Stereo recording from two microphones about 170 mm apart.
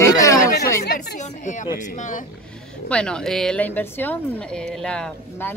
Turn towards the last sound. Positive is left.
turn(degrees=5)  # may be behind; listen again after turning